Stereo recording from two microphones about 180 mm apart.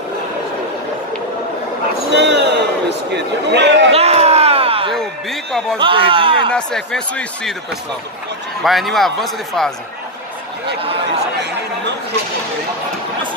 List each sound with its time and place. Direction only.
2.1 s a man's voice: 75° right (ahead or behind)
3.9 s a sound: 35° right (ahead or behind)
4.9 s a man's voice: centre (ahead or behind)
5.8 s speech: 30° right (ahead or behind)
6.5 s a man's voice: 5° left (ahead or behind)
8.6 s a man's voice: centre (ahead or behind)